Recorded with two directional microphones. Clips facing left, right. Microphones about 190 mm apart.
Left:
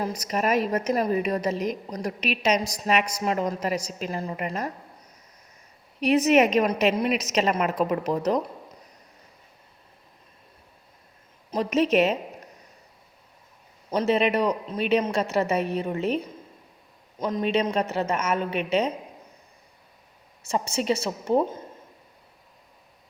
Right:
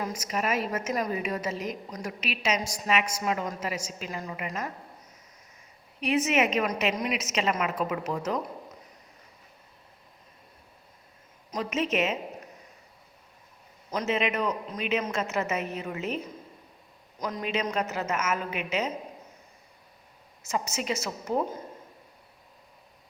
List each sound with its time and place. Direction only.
0.0 s a woman's voice: 35° left (ahead or behind)
6.0 s a woman's voice: 40° left (ahead or behind)
11.5 s a woman's voice: 35° left (ahead or behind)
13.9 s a woman's voice: 35° left (ahead or behind)
20.4 s a woman's voice: 30° left (ahead or behind)